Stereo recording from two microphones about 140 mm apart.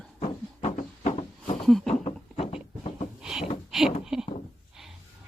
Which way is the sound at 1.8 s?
45° left (ahead or behind).